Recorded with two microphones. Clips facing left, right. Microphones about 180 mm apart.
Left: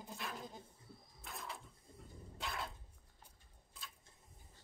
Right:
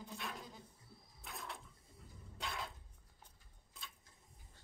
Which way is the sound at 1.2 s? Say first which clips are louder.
Even; centre (ahead or behind).